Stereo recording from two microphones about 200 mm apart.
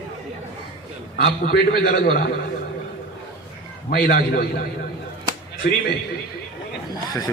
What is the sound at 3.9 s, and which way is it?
Speech, 50° left (ahead or behind).